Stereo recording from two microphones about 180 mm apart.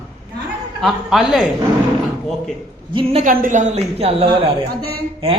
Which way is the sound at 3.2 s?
50° right (ahead or behind).